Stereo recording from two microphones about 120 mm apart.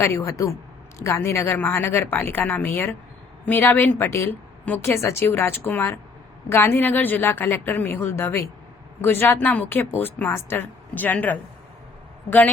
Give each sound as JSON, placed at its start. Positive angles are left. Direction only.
{"t": 0.0, "sound": "a woman's voice", "side_deg": 25}